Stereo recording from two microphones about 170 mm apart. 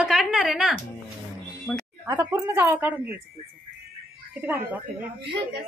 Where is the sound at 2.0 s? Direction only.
20° right (ahead or behind).